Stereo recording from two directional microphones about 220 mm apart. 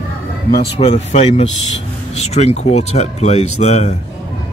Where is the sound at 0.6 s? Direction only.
30° left (ahead or behind).